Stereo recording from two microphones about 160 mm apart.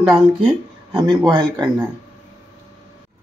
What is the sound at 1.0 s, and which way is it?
Speech, 30° right (ahead or behind).